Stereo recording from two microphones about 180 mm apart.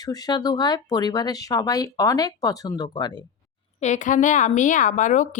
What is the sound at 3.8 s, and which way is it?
A woman's voice, 40° left (ahead or behind).